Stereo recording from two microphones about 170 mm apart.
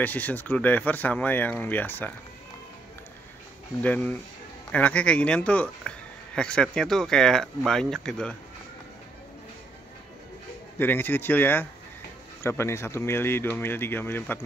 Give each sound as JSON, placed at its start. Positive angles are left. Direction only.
{"t": 0.0, "sound": "speech", "side_deg": 10}
{"t": 3.8, "sound": "speech", "side_deg": 10}
{"t": 10.8, "sound": "speech", "side_deg": 10}